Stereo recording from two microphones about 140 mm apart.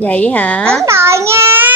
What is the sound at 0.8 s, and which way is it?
Speech, 20° right (ahead or behind).